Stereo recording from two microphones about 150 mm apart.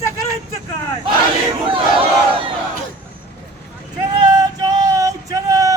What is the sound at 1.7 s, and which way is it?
Crowd, 35° right (ahead or behind).